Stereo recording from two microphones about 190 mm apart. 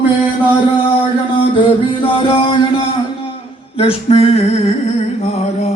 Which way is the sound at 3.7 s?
30° left (ahead or behind).